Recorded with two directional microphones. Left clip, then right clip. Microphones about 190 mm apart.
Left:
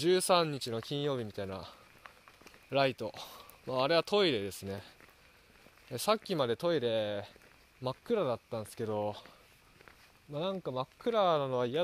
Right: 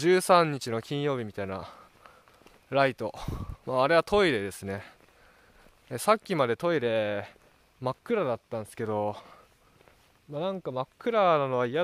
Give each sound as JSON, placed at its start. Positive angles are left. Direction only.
{"t": 0.0, "sound": "speech", "side_deg": -30}
{"t": 10.3, "sound": "speech", "side_deg": -30}